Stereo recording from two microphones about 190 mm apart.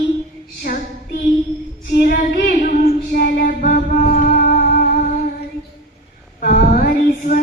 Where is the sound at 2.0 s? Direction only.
50° left (ahead or behind).